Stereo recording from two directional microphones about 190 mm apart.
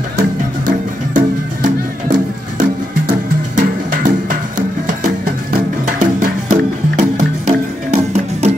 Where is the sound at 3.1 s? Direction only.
45° right (ahead or behind).